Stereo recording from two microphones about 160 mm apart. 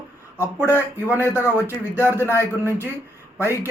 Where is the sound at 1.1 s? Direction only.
15° left (ahead or behind).